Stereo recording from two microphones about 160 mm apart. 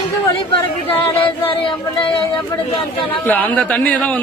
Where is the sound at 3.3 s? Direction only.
10° left (ahead or behind).